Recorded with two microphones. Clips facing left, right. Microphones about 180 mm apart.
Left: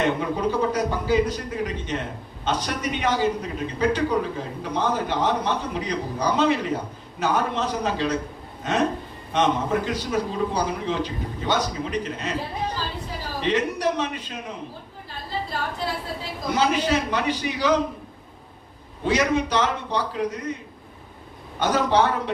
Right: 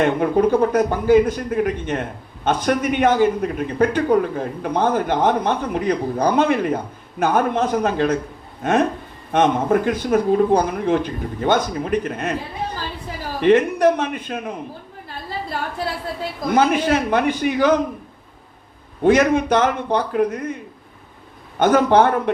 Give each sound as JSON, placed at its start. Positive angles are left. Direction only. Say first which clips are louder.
{"t": 0.0, "sound": "speech", "louder": "right 7 dB", "side_deg": -55}
{"t": 13.4, "sound": "speech", "louder": "right 9 dB", "side_deg": -55}
{"t": 16.5, "sound": "speech", "louder": "right 5 dB", "side_deg": -50}
{"t": 19.0, "sound": "speech", "louder": "right 7 dB", "side_deg": -50}
{"t": 21.6, "sound": "speech", "louder": "right 6 dB", "side_deg": -55}